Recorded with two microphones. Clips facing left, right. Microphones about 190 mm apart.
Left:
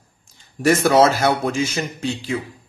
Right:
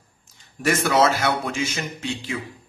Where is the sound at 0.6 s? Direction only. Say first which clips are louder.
Left 6 dB; 40° left (ahead or behind).